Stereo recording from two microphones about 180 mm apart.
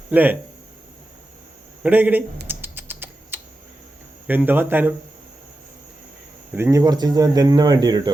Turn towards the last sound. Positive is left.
turn(degrees=-20)  # may be behind; listen again after turning